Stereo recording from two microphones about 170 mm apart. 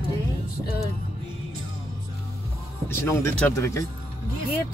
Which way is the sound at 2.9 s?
15° left (ahead or behind).